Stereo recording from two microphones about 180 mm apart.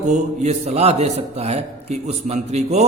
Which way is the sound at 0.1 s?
40° right (ahead or behind).